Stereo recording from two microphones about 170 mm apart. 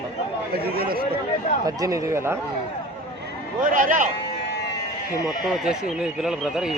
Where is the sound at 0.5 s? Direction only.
60° right (ahead or behind).